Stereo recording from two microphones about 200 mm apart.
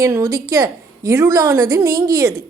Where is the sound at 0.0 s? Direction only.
15° right (ahead or behind).